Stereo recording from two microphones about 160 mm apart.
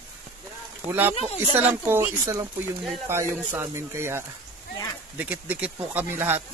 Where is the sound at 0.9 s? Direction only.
15° right (ahead or behind).